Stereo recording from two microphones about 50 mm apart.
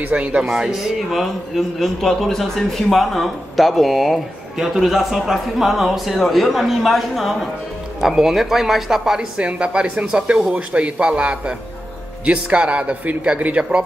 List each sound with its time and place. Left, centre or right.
0.0 s speech: right
0.6 s speech: centre
9.4 s speech: right